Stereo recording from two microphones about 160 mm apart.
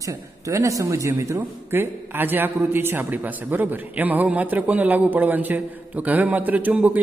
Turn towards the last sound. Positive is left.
turn(degrees=-10)  # may be behind; listen again after turning